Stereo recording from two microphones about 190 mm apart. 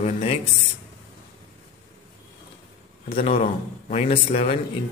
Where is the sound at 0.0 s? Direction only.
35° left (ahead or behind).